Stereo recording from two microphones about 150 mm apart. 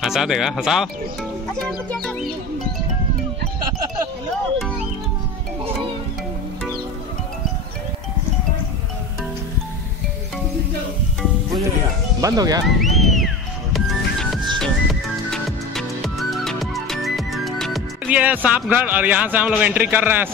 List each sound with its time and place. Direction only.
0.0 s speech: centre (ahead or behind)
1.6 s speech: 10° left (ahead or behind)
12.2 s speech: 25° right (ahead or behind)
12.6 s speech: centre (ahead or behind)
13.7 s music: centre (ahead or behind)
19.5 s a man's voice: 10° right (ahead or behind)